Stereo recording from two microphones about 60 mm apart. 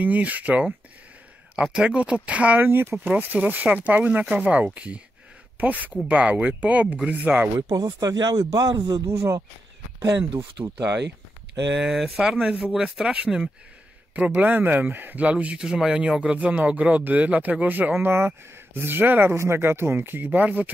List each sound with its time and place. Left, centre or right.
0.0 s speech: right
2.6 s speech: right
7.5 s speech: right
9.0 s speech: right
9.9 s speech: right
11.8 s speech: centre; by 15.2 s right
15.2 s speech: right
19.3 s speech: right
20.2 s speech: right